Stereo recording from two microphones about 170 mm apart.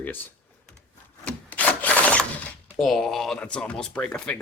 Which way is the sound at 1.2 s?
10° left (ahead or behind).